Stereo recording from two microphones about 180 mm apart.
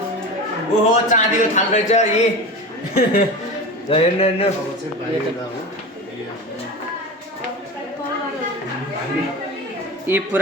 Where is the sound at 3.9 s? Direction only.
35° left (ahead or behind).